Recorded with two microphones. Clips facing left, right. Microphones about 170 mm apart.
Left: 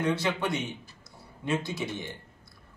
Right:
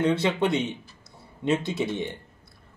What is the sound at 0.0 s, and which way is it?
A man's voice, 25° right (ahead or behind).